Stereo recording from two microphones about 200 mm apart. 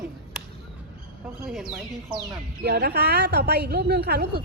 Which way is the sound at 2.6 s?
55° right (ahead or behind).